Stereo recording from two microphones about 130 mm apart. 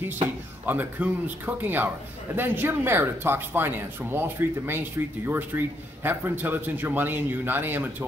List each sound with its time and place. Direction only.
0.7 s speech: 15° right (ahead or behind)